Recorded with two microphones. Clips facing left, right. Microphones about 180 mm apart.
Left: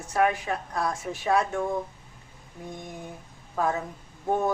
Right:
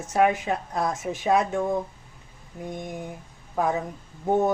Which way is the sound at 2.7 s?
20° right (ahead or behind).